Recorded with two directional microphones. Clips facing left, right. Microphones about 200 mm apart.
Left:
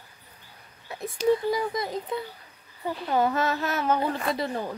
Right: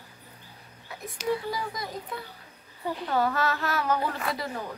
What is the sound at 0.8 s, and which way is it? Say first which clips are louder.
Speech: left 6 dB; 25° left (ahead or behind).